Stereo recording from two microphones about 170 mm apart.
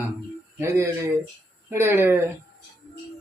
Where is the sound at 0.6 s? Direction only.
15° right (ahead or behind).